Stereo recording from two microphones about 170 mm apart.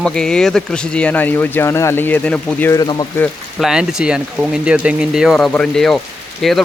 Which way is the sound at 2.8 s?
25° left (ahead or behind).